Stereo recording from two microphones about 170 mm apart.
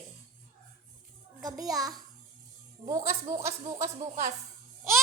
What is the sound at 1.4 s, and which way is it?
A child's voice, 20° right (ahead or behind).